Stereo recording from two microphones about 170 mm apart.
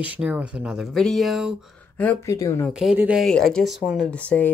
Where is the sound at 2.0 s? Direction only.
15° left (ahead or behind).